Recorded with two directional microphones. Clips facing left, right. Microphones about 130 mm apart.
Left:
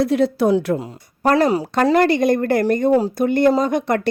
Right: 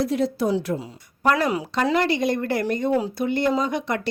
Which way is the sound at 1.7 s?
45° left (ahead or behind).